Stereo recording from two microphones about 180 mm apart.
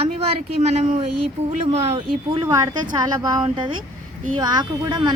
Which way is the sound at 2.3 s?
20° right (ahead or behind).